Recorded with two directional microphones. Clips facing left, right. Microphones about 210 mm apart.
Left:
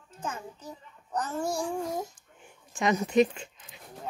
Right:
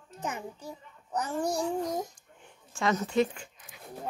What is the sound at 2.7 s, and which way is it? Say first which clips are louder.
Speech: left 3 dB; 15° left (ahead or behind).